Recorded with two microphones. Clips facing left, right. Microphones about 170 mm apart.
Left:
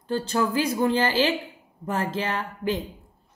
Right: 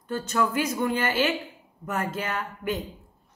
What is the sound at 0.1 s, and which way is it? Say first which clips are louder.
Speech: left 2 dB; 30° left (ahead or behind).